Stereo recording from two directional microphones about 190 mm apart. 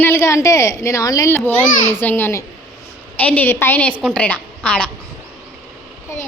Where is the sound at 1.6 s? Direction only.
45° left (ahead or behind).